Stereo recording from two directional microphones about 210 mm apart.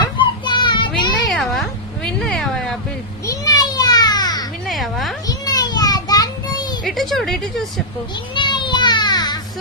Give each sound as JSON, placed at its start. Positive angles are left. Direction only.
{"t": 0.2, "sound": "child singing", "side_deg": 20}
{"t": 1.3, "sound": "speech", "side_deg": 0}
{"t": 3.3, "sound": "children playing", "side_deg": 20}
{"t": 4.6, "sound": "a sound", "side_deg": 0}
{"t": 5.3, "sound": "child singing", "side_deg": 20}
{"t": 6.8, "sound": "a woman's voice", "side_deg": 0}
{"t": 8.4, "sound": "children playing", "side_deg": 20}